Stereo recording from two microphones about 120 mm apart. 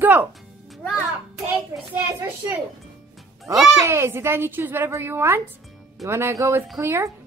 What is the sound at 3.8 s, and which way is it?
A woman's voice, 20° right (ahead or behind).